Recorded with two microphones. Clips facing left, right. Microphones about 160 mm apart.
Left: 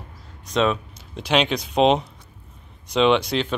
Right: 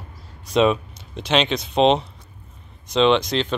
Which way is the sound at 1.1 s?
10° left (ahead or behind).